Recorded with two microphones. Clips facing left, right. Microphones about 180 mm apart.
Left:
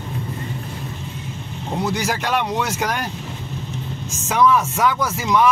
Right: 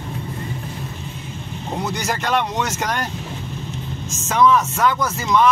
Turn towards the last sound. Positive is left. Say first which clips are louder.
# even
turn(degrees=10)  # may be behind; listen again after turning